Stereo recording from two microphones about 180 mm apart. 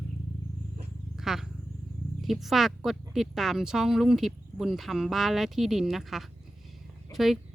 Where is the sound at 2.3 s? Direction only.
Centre (ahead or behind).